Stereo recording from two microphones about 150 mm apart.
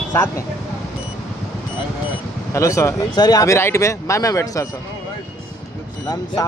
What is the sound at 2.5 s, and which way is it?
Speech, 20° left (ahead or behind).